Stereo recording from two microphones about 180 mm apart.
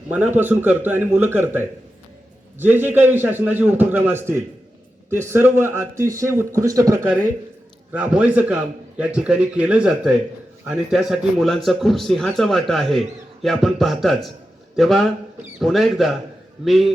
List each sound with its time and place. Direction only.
0.1 s a man's voice: 10° right (ahead or behind)